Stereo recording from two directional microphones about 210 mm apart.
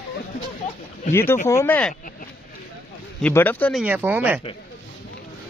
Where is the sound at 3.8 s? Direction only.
10° right (ahead or behind).